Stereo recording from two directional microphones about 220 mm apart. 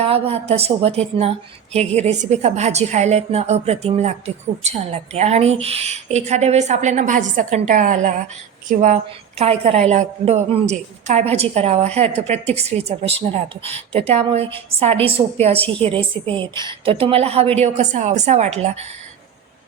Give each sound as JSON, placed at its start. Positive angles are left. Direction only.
{"t": 0.0, "sound": "a woman's voice", "side_deg": -25}
{"t": 9.4, "sound": "a woman's voice", "side_deg": -25}